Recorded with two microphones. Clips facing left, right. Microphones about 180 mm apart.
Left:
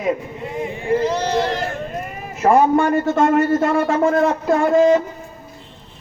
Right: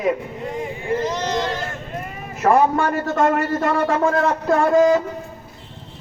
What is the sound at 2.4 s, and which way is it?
Speech, 30° left (ahead or behind).